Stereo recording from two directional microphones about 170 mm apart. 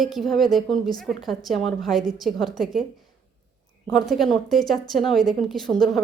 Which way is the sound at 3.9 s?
Centre (ahead or behind).